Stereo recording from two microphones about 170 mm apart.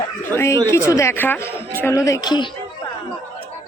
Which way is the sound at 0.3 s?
15° left (ahead or behind).